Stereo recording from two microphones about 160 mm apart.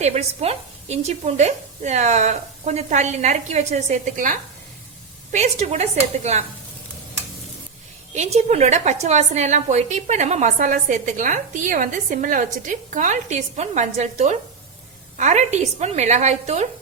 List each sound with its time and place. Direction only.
0.0 s a woman's voice: 45° right (ahead or behind)
8.1 s a woman's voice: 45° right (ahead or behind)